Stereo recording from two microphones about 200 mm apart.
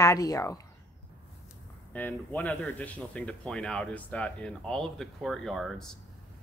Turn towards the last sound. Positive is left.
turn(degrees=5)  # may be behind; listen again after turning